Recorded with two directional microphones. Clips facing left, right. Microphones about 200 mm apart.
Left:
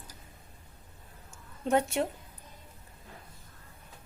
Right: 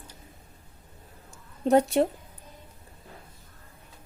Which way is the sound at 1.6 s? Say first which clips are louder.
Right 7 dB; 35° right (ahead or behind).